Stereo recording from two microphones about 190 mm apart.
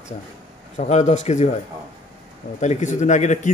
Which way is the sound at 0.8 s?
35° left (ahead or behind).